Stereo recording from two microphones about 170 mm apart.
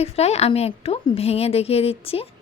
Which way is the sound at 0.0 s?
40° left (ahead or behind).